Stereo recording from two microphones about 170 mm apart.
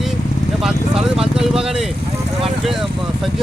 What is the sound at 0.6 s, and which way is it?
Speech, centre (ahead or behind).